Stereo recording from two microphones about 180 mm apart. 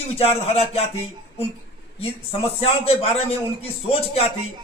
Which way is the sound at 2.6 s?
35° left (ahead or behind).